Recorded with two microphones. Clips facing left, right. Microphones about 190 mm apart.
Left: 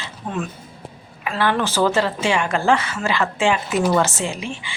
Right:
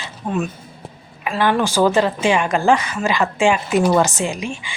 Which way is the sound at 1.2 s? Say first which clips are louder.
Right 3 dB; 15° right (ahead or behind).